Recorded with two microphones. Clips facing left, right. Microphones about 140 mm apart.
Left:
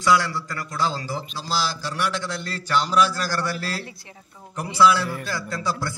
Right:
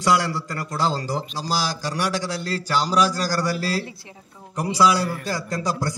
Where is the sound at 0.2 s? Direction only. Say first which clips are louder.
Right 2 dB; 35° right (ahead or behind).